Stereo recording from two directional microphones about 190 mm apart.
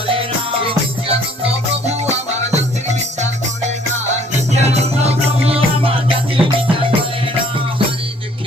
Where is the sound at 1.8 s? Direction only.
35° right (ahead or behind).